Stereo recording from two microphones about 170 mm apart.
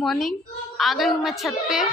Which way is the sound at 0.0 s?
Centre (ahead or behind).